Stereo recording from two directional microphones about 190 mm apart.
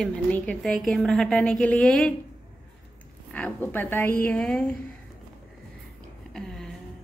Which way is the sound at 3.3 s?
10° left (ahead or behind).